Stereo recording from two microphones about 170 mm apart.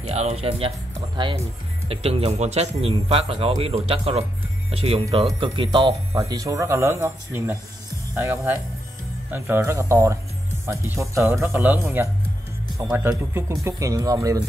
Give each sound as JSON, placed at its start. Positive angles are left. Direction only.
{"t": 0.0, "sound": "a man's voice", "side_deg": -40}